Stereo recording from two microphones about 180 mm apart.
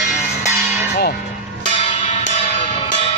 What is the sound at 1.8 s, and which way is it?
Music, 35° left (ahead or behind).